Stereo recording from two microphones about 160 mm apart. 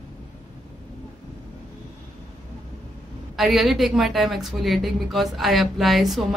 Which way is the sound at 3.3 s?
Centre (ahead or behind).